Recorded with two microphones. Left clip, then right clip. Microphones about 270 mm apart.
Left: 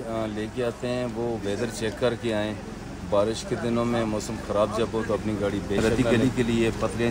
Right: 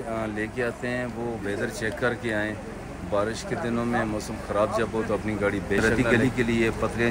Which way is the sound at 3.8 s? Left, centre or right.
Centre.